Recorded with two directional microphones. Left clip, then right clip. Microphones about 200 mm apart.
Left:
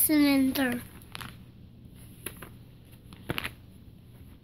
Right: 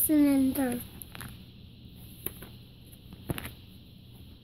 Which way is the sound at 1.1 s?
40° right (ahead or behind).